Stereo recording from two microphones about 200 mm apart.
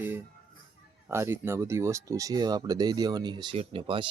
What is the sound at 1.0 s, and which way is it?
Speech, 10° right (ahead or behind).